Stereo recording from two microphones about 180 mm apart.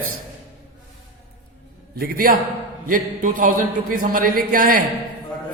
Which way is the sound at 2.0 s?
55° right (ahead or behind).